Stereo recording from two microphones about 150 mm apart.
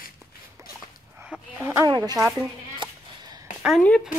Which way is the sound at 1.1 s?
10° right (ahead or behind).